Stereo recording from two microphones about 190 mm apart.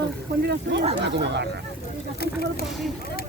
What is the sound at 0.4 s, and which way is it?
Speech, 65° right (ahead or behind).